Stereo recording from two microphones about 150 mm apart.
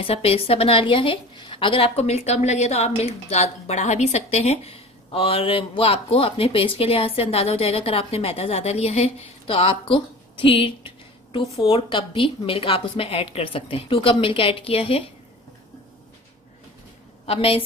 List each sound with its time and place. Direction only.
0.0 s a woman's voice: 40° left (ahead or behind)
17.3 s a woman's voice: 40° left (ahead or behind)